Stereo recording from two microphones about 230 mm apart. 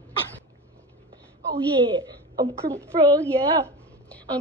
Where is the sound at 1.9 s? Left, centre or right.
Right.